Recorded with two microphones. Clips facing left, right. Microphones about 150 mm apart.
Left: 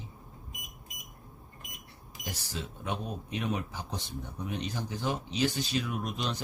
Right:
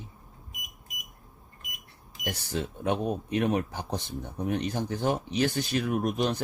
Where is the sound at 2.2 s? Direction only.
60° right (ahead or behind).